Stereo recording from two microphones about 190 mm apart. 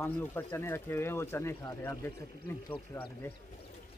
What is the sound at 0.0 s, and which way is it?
Speech, 10° left (ahead or behind).